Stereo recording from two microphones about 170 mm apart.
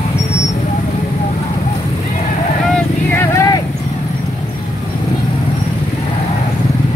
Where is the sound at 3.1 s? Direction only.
15° left (ahead or behind).